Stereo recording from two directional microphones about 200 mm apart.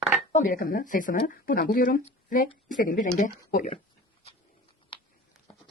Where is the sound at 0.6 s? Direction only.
45° left (ahead or behind).